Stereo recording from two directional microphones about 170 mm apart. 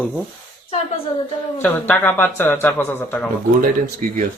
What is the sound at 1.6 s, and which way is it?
Speech, 10° left (ahead or behind).